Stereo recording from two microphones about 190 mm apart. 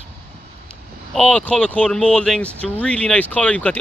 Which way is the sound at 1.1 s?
5° left (ahead or behind).